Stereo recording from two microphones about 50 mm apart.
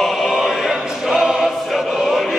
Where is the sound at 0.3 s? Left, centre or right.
Centre.